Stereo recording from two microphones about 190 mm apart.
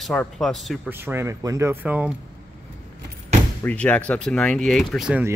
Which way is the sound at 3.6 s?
10° left (ahead or behind).